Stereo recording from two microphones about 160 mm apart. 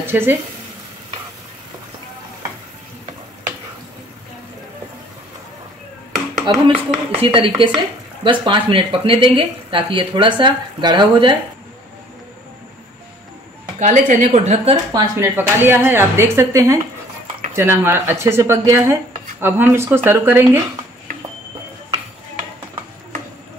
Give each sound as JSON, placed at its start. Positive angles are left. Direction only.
{"t": 0.0, "sound": "a woman's voice", "side_deg": -15}
{"t": 6.4, "sound": "speech", "side_deg": -30}
{"t": 13.7, "sound": "speech", "side_deg": -50}
{"t": 14.9, "sound": "a woman's voice", "side_deg": -20}